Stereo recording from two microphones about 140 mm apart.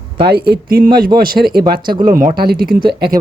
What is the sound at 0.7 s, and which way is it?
Speech, 90° right.